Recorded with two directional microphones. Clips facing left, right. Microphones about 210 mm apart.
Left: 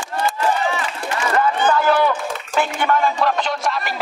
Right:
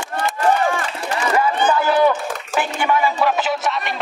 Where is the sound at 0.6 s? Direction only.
50° right (ahead or behind).